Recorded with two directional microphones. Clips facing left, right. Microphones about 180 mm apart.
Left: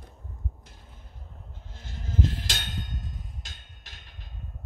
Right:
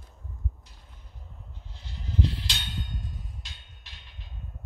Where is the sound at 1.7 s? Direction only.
45° left (ahead or behind).